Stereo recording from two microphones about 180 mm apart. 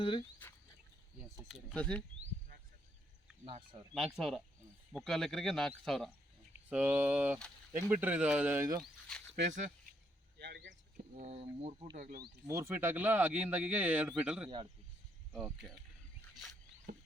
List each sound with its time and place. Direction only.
0.0 s speech: 30° left (ahead or behind)
1.2 s speech: 5° right (ahead or behind)
3.4 s speech: 30° right (ahead or behind)
4.2 s speech: centre (ahead or behind)
6.7 s speech: 10° right (ahead or behind)
8.8 s speech: 5° left (ahead or behind)
10.3 s a sound: 70° right (ahead or behind)
11.1 s speech: 35° right (ahead or behind)
12.5 s speech: 15° right (ahead or behind); by 15.8 s centre (ahead or behind)
16.9 s rodents: 65° right (ahead or behind)